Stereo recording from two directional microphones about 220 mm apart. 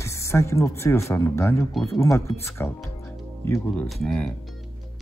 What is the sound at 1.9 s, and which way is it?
Speech, 15° left (ahead or behind).